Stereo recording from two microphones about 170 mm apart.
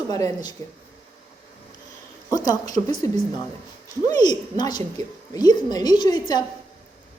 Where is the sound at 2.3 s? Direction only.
20° left (ahead or behind).